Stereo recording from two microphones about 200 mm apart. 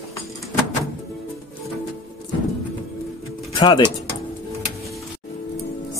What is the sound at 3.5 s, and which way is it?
Pigeon, 20° left (ahead or behind).